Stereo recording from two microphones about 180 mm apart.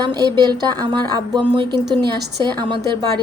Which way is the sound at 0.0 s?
25° right (ahead or behind).